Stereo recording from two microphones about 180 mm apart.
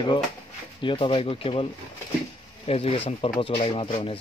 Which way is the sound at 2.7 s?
35° left (ahead or behind).